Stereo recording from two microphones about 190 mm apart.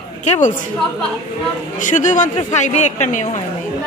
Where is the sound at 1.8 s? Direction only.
40° left (ahead or behind).